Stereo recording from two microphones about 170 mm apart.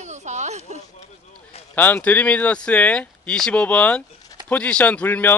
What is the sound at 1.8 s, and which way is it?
Speech, 10° left (ahead or behind).